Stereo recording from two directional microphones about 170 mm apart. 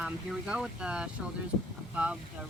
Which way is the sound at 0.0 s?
5° right (ahead or behind).